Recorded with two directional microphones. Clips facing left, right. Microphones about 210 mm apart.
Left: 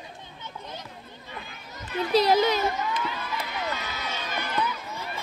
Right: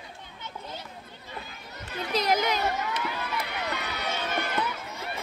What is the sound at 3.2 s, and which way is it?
Run, 65° right (ahead or behind).